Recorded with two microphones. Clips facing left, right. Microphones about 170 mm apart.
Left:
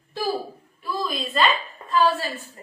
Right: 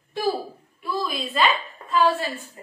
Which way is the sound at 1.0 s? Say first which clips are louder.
Left 1 dB; 10° right (ahead or behind).